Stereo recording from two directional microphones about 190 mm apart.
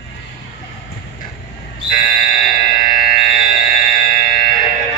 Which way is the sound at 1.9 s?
45° left (ahead or behind).